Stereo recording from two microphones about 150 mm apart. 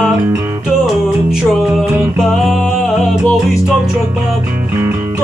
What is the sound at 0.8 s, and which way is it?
Music, centre (ahead or behind).